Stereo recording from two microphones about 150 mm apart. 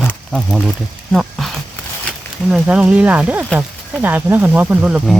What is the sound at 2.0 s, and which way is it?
Speech, 5° right (ahead or behind).